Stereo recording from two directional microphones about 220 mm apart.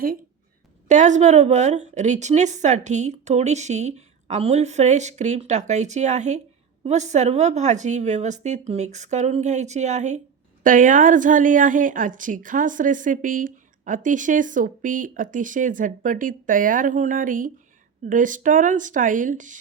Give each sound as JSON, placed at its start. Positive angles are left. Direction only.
{"t": 0.9, "sound": "a woman's voice", "side_deg": -35}